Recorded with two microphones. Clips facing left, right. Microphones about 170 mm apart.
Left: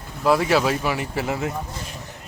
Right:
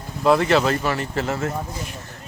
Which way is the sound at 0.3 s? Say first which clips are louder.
Right 2 dB; 5° left (ahead or behind).